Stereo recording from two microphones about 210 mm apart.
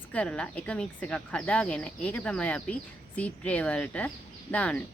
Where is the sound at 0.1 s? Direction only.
5° left (ahead or behind).